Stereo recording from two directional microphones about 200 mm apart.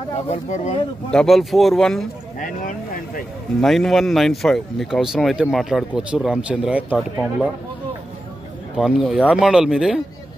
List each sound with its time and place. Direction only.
0.3 s speech: 35° left (ahead or behind)
1.1 s speech: centre (ahead or behind)
2.4 s vehicle: 45° left (ahead or behind)
3.6 s speech: centre (ahead or behind)
8.7 s speech: centre (ahead or behind)